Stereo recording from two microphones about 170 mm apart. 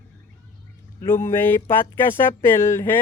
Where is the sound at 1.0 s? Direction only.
15° left (ahead or behind).